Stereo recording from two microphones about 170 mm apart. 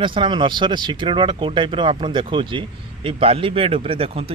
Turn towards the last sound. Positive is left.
turn(degrees=-35)  # may be behind; listen again after turning